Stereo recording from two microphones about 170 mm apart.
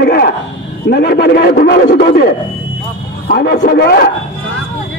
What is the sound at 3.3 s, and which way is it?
Speech, 90° left.